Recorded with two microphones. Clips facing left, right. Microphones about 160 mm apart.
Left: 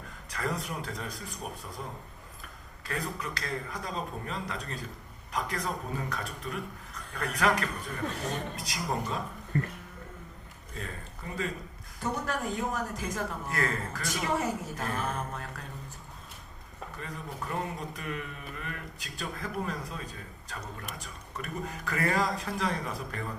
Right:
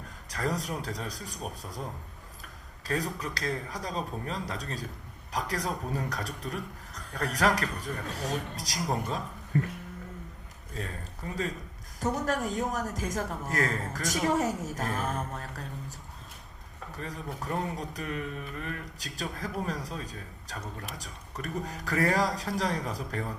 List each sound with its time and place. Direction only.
0.3 s a man's voice: 40° right (ahead or behind)
2.4 s a man's voice: 40° right (ahead or behind)
9.5 s speech: 5° right (ahead or behind)
11.9 s a woman's voice: 40° right (ahead or behind)
16.9 s a man's voice: 40° right (ahead or behind)